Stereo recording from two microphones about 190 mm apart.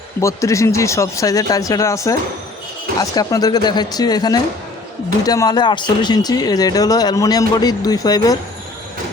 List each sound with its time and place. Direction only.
0.2 s speech: 15° left (ahead or behind)